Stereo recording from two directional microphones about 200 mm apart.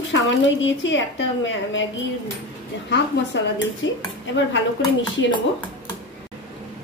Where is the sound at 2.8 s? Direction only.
65° left (ahead or behind).